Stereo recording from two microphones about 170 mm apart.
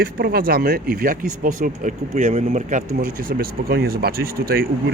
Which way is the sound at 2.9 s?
60° right (ahead or behind).